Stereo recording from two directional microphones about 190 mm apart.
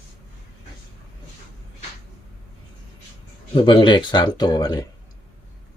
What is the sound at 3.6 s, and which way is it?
Speech, 25° left (ahead or behind).